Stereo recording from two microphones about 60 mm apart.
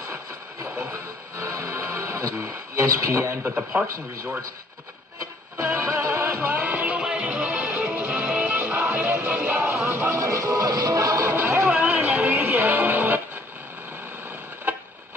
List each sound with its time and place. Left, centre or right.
0.1 s music: right
3.8 s speech: right
5.6 s music: right
6.6 s music: right
10.0 s music: right
11.2 s music: right
11.7 s music: right